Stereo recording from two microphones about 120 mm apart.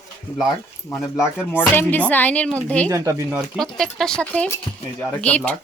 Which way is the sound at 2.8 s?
25° right (ahead or behind).